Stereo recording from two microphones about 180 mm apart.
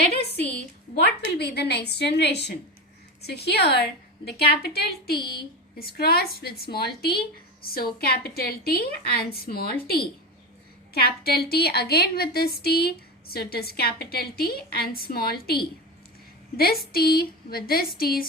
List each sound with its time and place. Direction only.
0.3 s a woman's voice: 65° left (ahead or behind)